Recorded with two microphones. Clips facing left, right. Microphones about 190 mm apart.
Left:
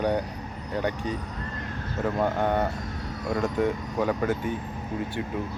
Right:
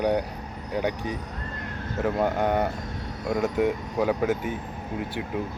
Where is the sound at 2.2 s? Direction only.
5° right (ahead or behind).